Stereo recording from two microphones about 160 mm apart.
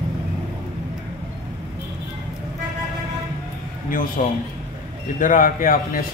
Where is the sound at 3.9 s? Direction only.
60° left (ahead or behind).